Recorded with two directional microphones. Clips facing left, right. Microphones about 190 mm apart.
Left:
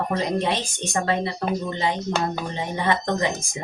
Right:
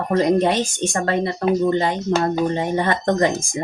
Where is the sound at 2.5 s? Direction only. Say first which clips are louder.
Right 4 dB; 50° right (ahead or behind).